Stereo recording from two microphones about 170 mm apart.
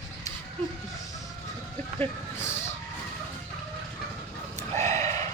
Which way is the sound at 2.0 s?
15° left (ahead or behind).